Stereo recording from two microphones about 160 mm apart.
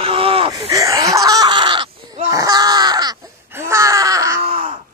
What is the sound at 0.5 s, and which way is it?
Speech, 20° right (ahead or behind).